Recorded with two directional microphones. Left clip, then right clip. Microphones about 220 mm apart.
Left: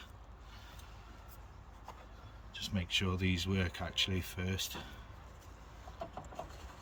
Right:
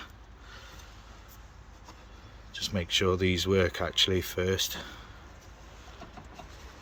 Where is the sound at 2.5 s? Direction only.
15° right (ahead or behind).